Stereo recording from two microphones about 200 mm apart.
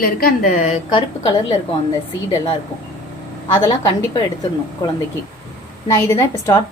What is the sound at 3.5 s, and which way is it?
Speech, 15° left (ahead or behind).